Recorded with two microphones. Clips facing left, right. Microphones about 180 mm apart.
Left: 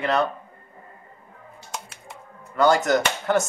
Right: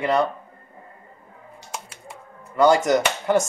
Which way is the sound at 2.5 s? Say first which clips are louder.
Right 2 dB; 10° right (ahead or behind).